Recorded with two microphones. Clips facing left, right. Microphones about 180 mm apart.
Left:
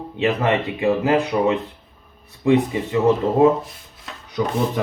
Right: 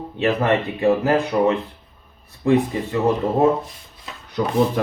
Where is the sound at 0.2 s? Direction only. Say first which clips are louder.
Right 1 dB; 15° left (ahead or behind).